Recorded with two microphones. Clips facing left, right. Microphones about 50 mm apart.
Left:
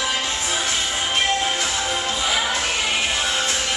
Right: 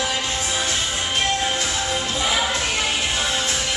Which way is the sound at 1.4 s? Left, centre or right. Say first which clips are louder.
Even; centre.